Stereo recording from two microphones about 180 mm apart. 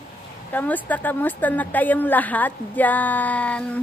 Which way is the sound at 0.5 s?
10° left (ahead or behind).